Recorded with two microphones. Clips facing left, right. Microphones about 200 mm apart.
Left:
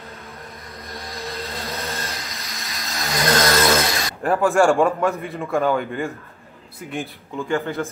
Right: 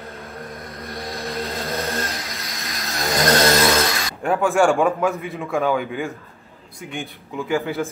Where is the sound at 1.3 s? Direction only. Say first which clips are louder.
Right 5 dB; 50° right (ahead or behind).